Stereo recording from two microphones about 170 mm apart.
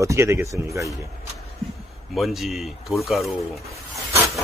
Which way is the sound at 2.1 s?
Centre (ahead or behind).